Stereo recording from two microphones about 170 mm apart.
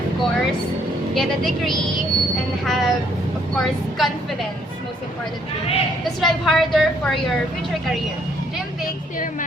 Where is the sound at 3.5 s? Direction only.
Centre (ahead or behind).